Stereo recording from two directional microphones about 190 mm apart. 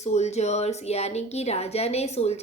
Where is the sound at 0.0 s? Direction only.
35° left (ahead or behind).